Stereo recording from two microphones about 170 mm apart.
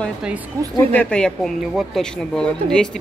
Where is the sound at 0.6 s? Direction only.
15° right (ahead or behind).